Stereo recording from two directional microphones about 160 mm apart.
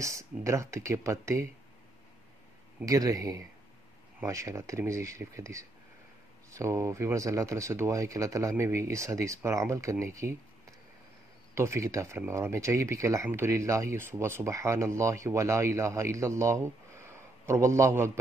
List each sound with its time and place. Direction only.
0.0 s speech: 20° right (ahead or behind)
2.8 s speech: 20° right (ahead or behind)
11.5 s speech: 15° right (ahead or behind)